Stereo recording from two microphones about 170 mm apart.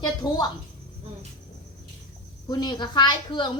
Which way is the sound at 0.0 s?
25° left (ahead or behind).